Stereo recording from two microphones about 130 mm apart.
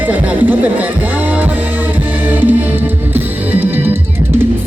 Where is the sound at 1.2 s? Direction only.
15° right (ahead or behind).